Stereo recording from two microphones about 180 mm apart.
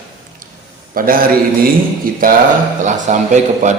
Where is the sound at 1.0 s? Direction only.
50° right (ahead or behind).